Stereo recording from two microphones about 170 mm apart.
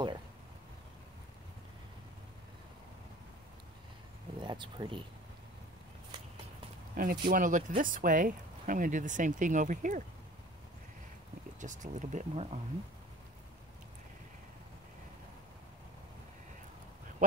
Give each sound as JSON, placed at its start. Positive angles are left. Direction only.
{"t": 4.4, "sound": "speech", "side_deg": -30}
{"t": 7.0, "sound": "speech", "side_deg": -55}
{"t": 11.6, "sound": "speech", "side_deg": -45}